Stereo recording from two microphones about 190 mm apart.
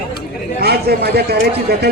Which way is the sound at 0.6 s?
55° right (ahead or behind).